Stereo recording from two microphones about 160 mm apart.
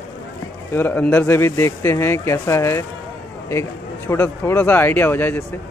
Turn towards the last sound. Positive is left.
turn(degrees=10)  # may be behind; listen again after turning